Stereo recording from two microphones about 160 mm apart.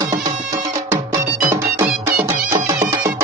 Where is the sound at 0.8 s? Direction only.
15° right (ahead or behind).